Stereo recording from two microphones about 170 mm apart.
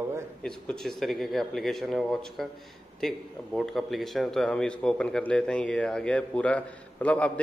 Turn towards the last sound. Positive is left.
turn(degrees=5)  # may be behind; listen again after turning